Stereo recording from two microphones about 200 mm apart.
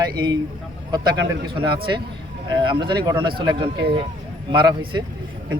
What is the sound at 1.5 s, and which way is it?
A man's voice, 25° right (ahead or behind).